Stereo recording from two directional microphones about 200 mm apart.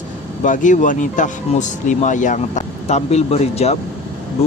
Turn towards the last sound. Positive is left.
turn(degrees=30)  # may be behind; listen again after turning